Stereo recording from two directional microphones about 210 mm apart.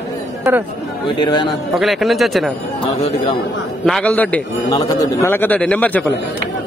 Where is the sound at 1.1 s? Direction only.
20° left (ahead or behind).